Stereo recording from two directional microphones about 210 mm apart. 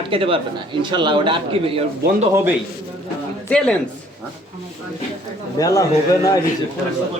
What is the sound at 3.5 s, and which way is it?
Speech, 5° left (ahead or behind).